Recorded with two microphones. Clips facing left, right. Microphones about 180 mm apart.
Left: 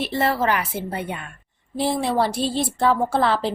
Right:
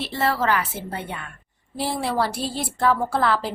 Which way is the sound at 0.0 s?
15° left (ahead or behind).